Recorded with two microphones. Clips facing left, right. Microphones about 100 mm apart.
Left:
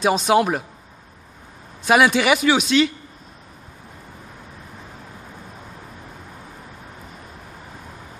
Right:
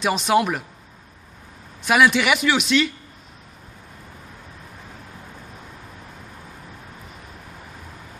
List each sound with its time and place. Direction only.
0.0 s speech: 35° left (ahead or behind)
1.9 s speech: 35° left (ahead or behind)